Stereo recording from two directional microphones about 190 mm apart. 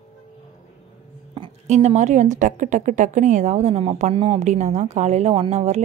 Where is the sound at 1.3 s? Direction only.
30° right (ahead or behind).